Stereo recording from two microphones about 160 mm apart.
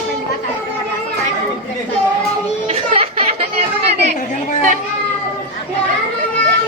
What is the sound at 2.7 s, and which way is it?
Music, 40° right (ahead or behind).